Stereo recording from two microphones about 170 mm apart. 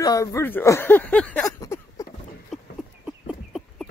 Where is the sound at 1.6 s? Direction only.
20° left (ahead or behind).